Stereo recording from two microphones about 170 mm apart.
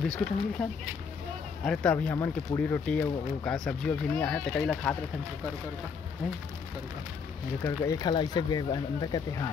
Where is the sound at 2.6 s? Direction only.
5° left (ahead or behind).